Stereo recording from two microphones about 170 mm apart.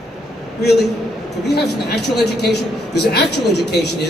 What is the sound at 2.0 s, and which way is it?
A man's voice, 75° left (ahead or behind).